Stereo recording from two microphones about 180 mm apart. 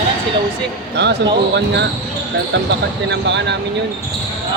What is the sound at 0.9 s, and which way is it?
Speech, 70° right (ahead or behind).